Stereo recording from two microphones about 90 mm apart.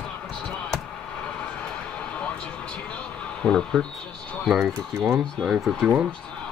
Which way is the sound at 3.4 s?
5° left (ahead or behind).